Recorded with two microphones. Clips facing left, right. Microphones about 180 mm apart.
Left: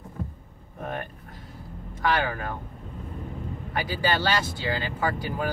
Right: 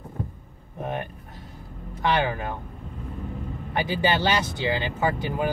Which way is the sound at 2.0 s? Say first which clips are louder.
Right 2 dB; 20° right (ahead or behind).